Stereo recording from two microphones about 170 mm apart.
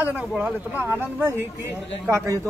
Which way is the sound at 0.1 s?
5° right (ahead or behind).